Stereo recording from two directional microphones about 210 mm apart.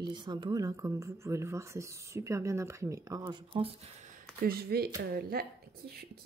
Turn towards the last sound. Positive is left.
turn(degrees=-45)  # may be behind; listen again after turning